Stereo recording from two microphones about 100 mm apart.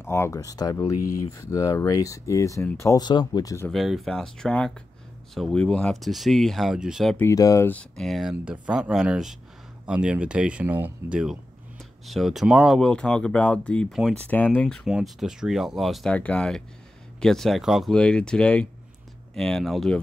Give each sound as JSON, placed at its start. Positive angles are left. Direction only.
{"t": 0.0, "sound": "speech", "side_deg": 25}
{"t": 3.0, "sound": "speech", "side_deg": 45}
{"t": 3.7, "sound": "speech", "side_deg": 0}
{"t": 7.3, "sound": "speech", "side_deg": 35}
{"t": 7.9, "sound": "speech", "side_deg": 5}
{"t": 14.9, "sound": "speech", "side_deg": -5}
{"t": 16.1, "sound": "speech", "side_deg": 10}
{"t": 17.9, "sound": "speech", "side_deg": 10}